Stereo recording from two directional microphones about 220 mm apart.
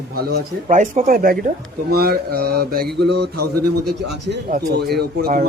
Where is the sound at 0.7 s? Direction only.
35° right (ahead or behind).